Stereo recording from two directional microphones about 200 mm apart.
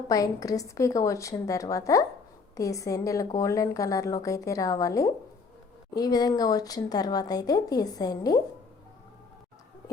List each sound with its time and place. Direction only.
0.1 s a woman's voice: 15° left (ahead or behind)